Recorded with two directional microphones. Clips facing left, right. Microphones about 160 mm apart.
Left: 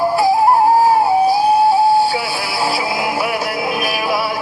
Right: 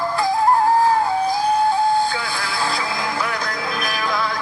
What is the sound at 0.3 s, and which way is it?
Music, 10° left (ahead or behind).